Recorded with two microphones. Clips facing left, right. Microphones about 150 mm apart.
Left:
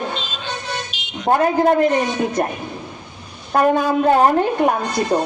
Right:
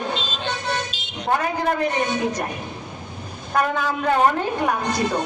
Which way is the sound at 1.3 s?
35° left (ahead or behind).